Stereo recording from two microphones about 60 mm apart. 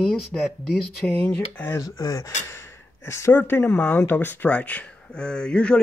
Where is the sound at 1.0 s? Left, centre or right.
Centre.